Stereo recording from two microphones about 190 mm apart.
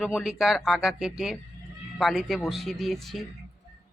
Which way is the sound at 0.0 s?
Centre (ahead or behind).